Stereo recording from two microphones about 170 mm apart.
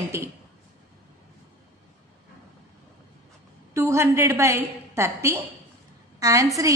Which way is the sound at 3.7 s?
15° right (ahead or behind).